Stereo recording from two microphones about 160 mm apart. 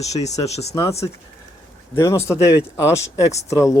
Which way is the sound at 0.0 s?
45° left (ahead or behind).